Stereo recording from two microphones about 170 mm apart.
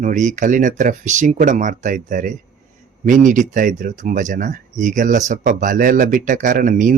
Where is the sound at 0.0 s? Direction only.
50° right (ahead or behind).